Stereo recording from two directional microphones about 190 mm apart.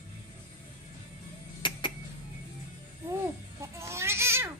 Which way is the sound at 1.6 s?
25° left (ahead or behind).